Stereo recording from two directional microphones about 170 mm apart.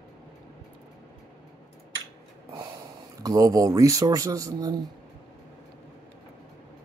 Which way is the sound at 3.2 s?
20° right (ahead or behind).